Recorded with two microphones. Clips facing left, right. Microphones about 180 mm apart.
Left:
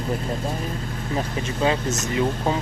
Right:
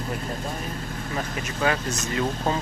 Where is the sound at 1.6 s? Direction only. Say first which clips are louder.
Left 3 dB; 25° left (ahead or behind).